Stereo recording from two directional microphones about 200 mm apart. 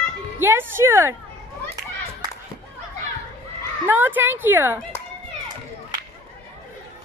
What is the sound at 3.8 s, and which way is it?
Speech, 10° right (ahead or behind).